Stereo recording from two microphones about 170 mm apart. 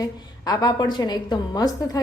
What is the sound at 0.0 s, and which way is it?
A woman's voice, 20° left (ahead or behind).